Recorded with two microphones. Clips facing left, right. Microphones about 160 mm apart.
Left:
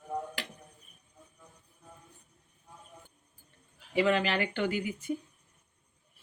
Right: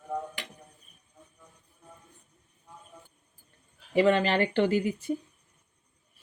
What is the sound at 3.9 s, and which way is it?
Speech, 40° right (ahead or behind).